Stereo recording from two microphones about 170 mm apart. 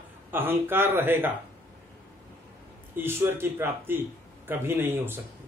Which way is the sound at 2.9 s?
15° right (ahead or behind).